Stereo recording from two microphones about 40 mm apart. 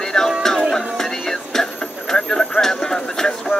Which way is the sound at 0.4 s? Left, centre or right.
Centre.